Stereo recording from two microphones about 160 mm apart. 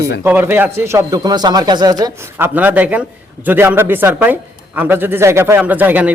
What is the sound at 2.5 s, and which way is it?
A man's voice, 10° right (ahead or behind).